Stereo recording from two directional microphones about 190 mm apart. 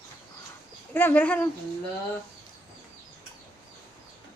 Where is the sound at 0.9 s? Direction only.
10° left (ahead or behind).